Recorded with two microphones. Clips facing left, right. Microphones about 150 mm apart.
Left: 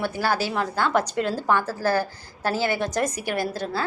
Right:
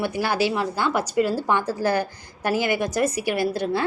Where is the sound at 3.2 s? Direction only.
45° left (ahead or behind).